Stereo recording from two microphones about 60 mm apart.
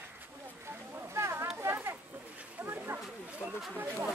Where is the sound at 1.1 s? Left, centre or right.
Right.